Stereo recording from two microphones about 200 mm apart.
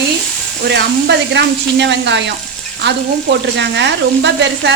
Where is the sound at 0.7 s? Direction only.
60° right (ahead or behind).